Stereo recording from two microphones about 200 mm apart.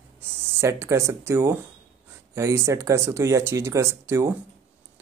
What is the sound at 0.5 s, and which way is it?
Speech, 10° right (ahead or behind).